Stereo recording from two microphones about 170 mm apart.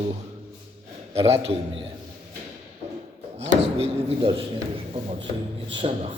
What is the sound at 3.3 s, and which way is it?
Speech, 40° right (ahead or behind).